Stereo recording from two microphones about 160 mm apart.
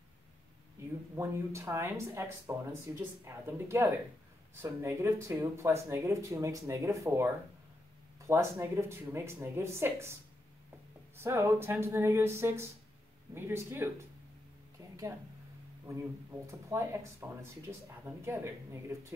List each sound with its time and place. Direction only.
1.1 s speech: 15° right (ahead or behind)
8.3 s speech: 15° right (ahead or behind)
11.1 s speech: 15° right (ahead or behind)
16.4 s speech: 15° right (ahead or behind)